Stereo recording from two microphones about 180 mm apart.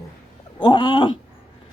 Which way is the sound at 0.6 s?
25° left (ahead or behind).